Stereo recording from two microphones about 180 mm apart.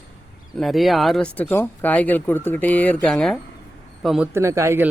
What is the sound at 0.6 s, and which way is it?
Speech, centre (ahead or behind).